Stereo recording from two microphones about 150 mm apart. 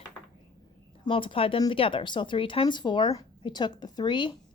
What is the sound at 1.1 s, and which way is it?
Speech, 35° left (ahead or behind).